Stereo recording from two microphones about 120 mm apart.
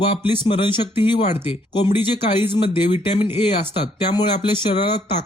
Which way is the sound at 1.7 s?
40° left (ahead or behind).